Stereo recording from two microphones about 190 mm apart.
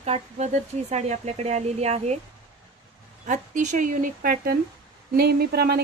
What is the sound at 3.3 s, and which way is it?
A woman's voice, 40° right (ahead or behind).